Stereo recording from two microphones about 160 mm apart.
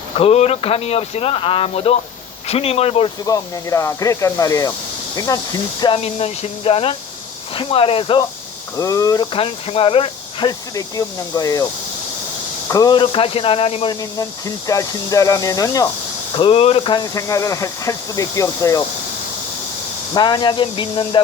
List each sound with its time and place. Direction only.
0.2 s speech: 40° left (ahead or behind)
3.2 s speech: 20° left (ahead or behind)
5.8 s speech: 35° left (ahead or behind)
8.7 s speech: 20° left (ahead or behind)
9.3 s speech: 35° left (ahead or behind)
10.8 s speech: 20° left (ahead or behind); by 13.9 s 35° left (ahead or behind)
14.0 s speech: 20° left (ahead or behind)
16.4 s speech: 35° left (ahead or behind); by 18.9 s 20° left (ahead or behind)
20.1 s speech: 25° left (ahead or behind)